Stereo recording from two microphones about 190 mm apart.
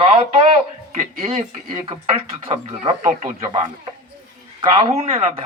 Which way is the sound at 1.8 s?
30° right (ahead or behind).